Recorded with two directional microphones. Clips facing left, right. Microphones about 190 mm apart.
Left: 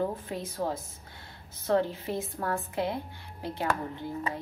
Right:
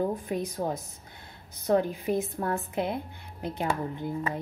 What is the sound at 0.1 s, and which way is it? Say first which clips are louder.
A woman's voice: right 5 dB; 15° right (ahead or behind).